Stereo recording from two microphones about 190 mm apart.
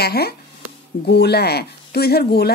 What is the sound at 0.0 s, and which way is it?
A woman's voice, 55° left (ahead or behind).